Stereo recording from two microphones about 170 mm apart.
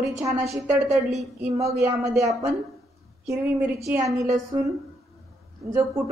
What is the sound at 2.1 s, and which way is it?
Speech, centre (ahead or behind).